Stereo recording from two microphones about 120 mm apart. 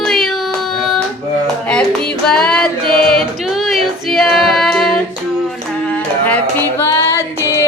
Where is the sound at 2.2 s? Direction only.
5° left (ahead or behind).